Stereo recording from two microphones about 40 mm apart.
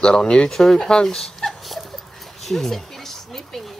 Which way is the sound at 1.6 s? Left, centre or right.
Centre.